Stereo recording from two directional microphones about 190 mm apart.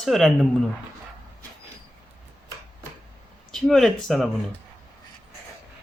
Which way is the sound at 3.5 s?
Centre (ahead or behind).